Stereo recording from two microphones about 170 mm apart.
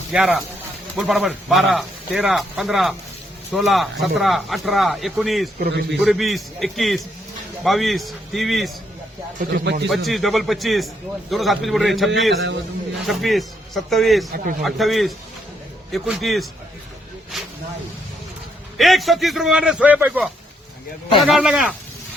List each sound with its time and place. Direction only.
0.1 s speech: 5° right (ahead or behind)
5.5 s a man's voice: 70° right (ahead or behind)
6.0 s speech: centre (ahead or behind)
9.4 s speech: 65° right (ahead or behind)
9.9 s speech: centre (ahead or behind)
17.3 s snake: centre (ahead or behind)
18.8 s speech: centre (ahead or behind)